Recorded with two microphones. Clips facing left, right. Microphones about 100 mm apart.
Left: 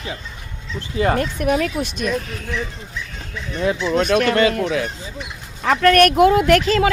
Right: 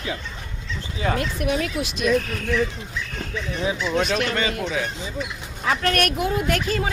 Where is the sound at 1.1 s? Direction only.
45° left (ahead or behind).